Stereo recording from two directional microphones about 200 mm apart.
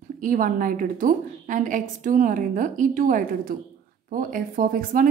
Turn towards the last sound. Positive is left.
turn(degrees=-45)  # may be behind; listen again after turning